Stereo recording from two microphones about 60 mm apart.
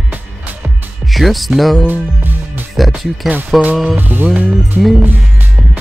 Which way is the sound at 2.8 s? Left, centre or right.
Centre.